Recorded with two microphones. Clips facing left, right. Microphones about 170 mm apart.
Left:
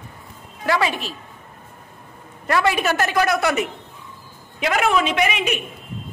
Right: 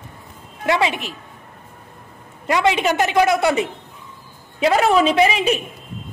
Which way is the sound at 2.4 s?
20° right (ahead or behind).